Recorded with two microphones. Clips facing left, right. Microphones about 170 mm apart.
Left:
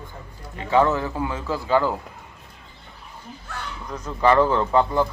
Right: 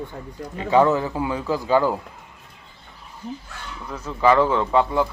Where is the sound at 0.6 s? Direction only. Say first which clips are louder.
Right 2 dB; 20° right (ahead or behind).